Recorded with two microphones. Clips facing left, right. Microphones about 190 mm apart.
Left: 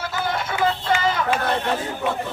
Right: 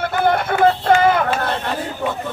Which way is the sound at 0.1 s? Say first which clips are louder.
Right 9 dB; 55° right (ahead or behind).